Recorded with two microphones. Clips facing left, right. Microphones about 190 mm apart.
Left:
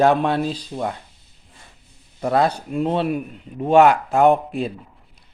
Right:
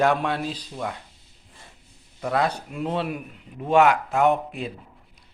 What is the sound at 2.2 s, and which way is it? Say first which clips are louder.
Speech: left 5 dB; 35° left (ahead or behind).